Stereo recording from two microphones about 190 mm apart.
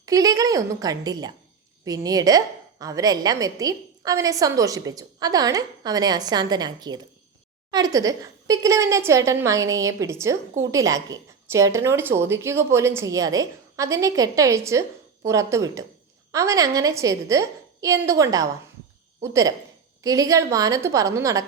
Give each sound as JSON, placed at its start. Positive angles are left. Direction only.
{"t": 0.0, "sound": "a woman's voice", "side_deg": -20}